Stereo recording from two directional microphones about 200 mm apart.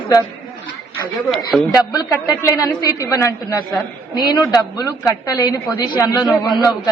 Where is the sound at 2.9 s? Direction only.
15° left (ahead or behind).